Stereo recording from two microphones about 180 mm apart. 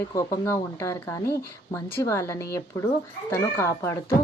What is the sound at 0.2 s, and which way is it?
Speech, 15° left (ahead or behind).